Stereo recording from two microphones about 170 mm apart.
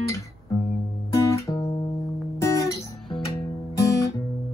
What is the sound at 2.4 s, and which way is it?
Guitar, 20° left (ahead or behind).